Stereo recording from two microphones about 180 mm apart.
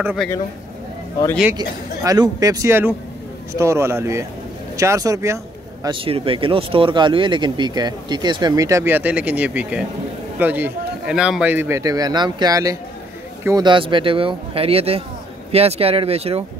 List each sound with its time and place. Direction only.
0.0 s a man's voice: 5° right (ahead or behind)
1.6 s a man's voice: 20° right (ahead or behind)
5.9 s a man's voice: 30° right (ahead or behind)